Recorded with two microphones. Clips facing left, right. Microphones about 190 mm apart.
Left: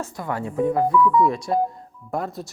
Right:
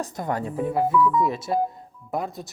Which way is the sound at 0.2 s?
40° right (ahead or behind).